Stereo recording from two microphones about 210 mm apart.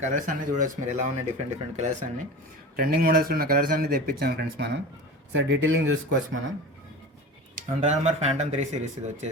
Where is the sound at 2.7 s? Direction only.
45° right (ahead or behind).